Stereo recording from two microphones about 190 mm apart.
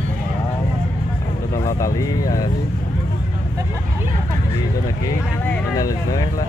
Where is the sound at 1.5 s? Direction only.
15° left (ahead or behind).